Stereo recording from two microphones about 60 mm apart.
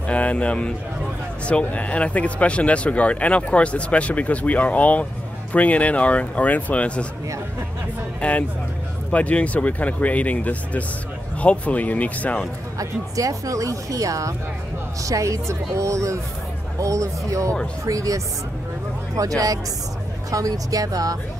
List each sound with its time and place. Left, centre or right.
0.0 s a man's voice: left
8.2 s speech: centre
12.7 s a woman's voice: right